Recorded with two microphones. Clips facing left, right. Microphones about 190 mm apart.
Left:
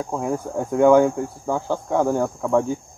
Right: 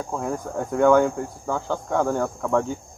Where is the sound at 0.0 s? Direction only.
15° left (ahead or behind).